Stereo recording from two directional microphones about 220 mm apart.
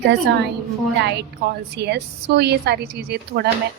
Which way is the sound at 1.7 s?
50° right (ahead or behind).